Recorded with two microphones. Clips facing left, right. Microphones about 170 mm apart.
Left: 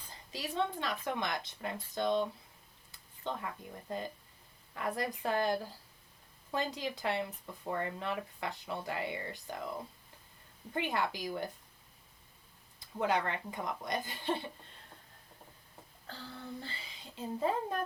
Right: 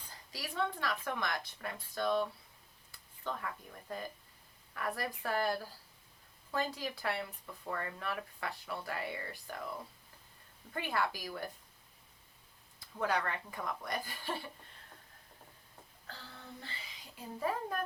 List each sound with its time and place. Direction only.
0.1 s speech: 20° left (ahead or behind)
10.8 s speech: 20° left (ahead or behind)
13.0 s speech: 20° left (ahead or behind)
16.6 s speech: 30° left (ahead or behind)